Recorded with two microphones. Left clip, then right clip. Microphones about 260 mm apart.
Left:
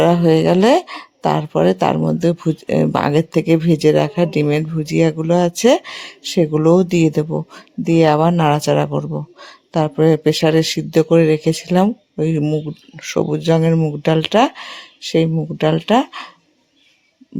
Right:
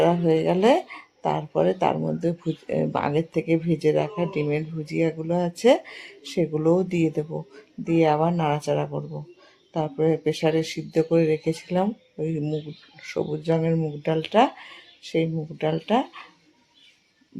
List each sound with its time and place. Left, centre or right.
0.0 s speech: left